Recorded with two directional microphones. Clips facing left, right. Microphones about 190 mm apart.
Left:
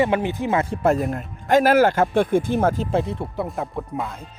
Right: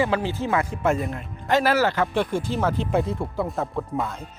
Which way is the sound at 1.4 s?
50° left (ahead or behind).